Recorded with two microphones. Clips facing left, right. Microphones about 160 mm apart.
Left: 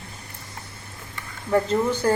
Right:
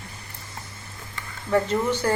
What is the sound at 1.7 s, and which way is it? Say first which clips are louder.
Speech: left 2 dB; 10° left (ahead or behind).